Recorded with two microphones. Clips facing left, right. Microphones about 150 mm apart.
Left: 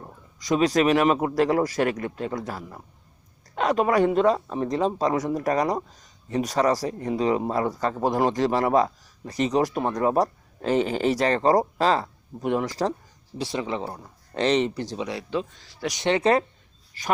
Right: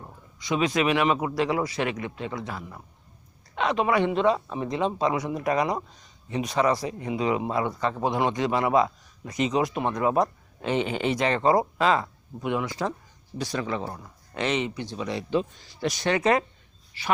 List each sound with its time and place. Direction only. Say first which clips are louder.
0.3 s speech: left 4 dB; 40° left (ahead or behind)
4.4 s speech: left 3 dB; 5° right (ahead or behind)
4.7 s speech: left 2 dB; 40° left (ahead or behind)
13.4 s speech: left 1 dB; 25° left (ahead or behind)
15.0 s speech: right 4 dB; centre (ahead or behind)
15.9 s speech: left 2 dB; 20° left (ahead or behind)
16.9 s speech: left 1 dB; 45° left (ahead or behind)